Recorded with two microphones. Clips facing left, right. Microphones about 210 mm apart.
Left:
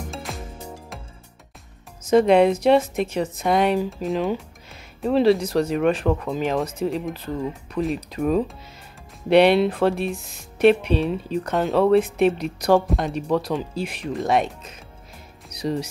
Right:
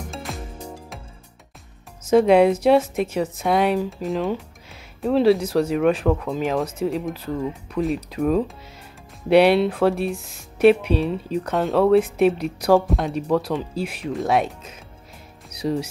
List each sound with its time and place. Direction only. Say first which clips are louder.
0.1 s music: right 1 dB; centre (ahead or behind)
2.0 s speech: right 1 dB; 5° right (ahead or behind)